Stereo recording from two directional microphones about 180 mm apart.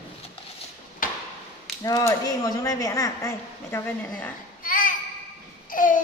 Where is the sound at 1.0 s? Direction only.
50° left (ahead or behind).